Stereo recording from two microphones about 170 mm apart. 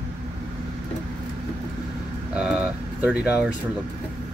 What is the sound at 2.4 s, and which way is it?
Speech, 5° right (ahead or behind).